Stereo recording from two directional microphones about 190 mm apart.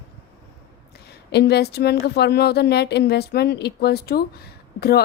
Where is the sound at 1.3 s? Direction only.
60° left (ahead or behind).